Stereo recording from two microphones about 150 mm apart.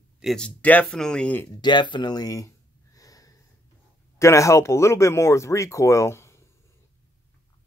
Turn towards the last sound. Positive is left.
turn(degrees=20)  # may be behind; listen again after turning